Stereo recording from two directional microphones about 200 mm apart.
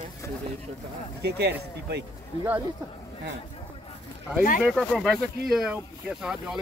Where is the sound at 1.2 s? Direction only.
55° right (ahead or behind).